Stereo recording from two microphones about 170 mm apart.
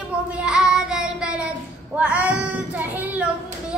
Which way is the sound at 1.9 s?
10° right (ahead or behind).